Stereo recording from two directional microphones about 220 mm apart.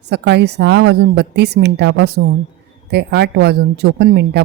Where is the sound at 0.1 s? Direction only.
50° right (ahead or behind).